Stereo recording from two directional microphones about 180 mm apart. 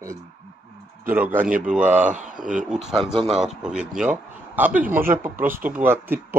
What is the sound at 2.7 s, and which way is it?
Speech, 5° right (ahead or behind).